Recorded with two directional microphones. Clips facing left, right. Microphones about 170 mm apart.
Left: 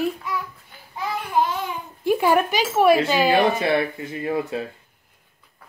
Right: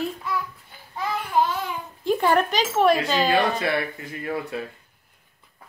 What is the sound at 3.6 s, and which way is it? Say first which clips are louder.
Speech: left 4 dB; 25° left (ahead or behind).